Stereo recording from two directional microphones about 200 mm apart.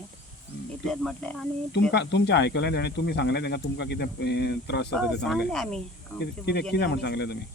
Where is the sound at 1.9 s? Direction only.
60° left (ahead or behind).